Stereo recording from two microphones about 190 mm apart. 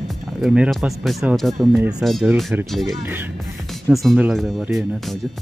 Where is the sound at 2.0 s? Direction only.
Centre (ahead or behind).